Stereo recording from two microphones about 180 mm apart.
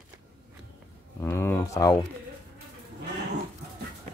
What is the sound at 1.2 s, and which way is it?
Speech, 15° left (ahead or behind).